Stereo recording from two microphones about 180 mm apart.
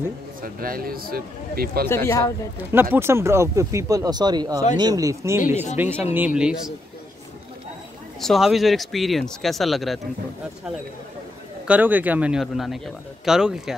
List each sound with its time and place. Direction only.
0.4 s speech: 55° right (ahead or behind)
2.0 s speech: 15° left (ahead or behind)
2.7 s speech: 10° right (ahead or behind)
8.2 s speech: centre (ahead or behind)
11.6 s speech: 10° right (ahead or behind)